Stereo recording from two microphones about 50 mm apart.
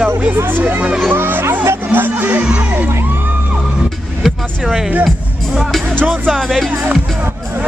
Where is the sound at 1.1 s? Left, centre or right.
Right.